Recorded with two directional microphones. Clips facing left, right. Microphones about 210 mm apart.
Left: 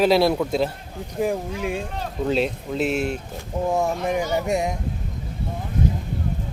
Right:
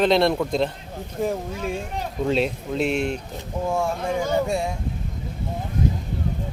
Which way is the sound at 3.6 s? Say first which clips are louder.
Left 2 dB; 20° left (ahead or behind).